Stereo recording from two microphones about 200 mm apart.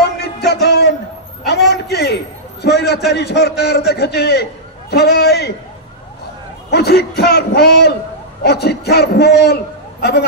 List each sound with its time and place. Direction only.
0.2 s music: 55° left (ahead or behind)
1.7 s a sound: 55° left (ahead or behind)
2.6 s a man's voice: 55° left (ahead or behind)
6.7 s a man's voice: 55° left (ahead or behind)